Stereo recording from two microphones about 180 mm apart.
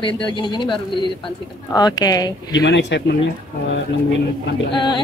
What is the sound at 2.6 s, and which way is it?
Speech, 80° left.